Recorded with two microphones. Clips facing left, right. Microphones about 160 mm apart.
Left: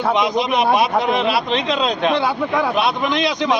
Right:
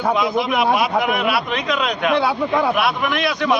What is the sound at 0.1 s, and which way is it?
A man's voice, 20° left (ahead or behind).